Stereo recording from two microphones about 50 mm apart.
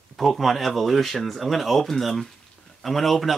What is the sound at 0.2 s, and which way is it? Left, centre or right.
Speech, centre.